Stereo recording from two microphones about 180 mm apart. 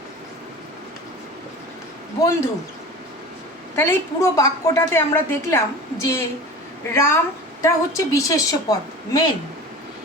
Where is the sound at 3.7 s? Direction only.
15° left (ahead or behind).